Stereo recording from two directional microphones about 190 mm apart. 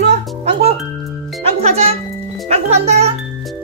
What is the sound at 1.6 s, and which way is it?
Speech, 35° right (ahead or behind).